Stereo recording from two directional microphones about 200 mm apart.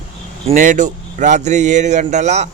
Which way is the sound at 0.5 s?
40° right (ahead or behind).